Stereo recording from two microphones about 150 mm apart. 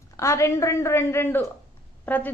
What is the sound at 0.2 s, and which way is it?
A woman's voice, 20° left (ahead or behind).